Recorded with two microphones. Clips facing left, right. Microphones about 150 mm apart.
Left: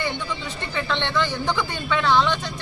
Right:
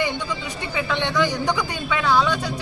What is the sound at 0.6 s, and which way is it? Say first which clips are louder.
A man's voice: right 2 dB; 10° right (ahead or behind).